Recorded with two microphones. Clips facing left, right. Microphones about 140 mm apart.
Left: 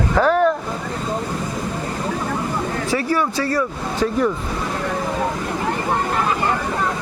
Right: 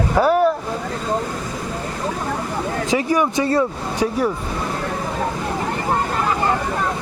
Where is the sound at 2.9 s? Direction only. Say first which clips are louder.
Right 3 dB; 15° right (ahead or behind).